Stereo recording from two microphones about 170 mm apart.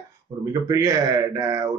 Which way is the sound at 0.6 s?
20° right (ahead or behind).